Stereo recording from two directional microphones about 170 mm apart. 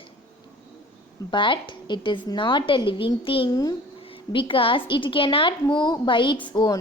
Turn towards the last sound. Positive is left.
turn(degrees=25)  # may be behind; listen again after turning